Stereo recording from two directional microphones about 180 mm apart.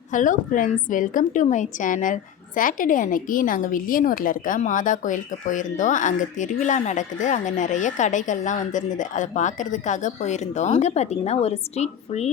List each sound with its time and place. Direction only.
0.1 s a woman's voice: 45° left (ahead or behind)